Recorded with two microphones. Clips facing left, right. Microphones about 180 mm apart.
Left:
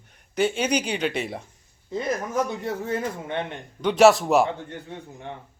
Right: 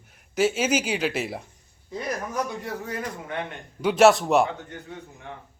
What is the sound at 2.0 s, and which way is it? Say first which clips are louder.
Speech: left 3 dB; 25° left (ahead or behind).